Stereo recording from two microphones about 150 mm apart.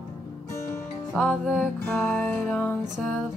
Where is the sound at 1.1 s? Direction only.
Centre (ahead or behind).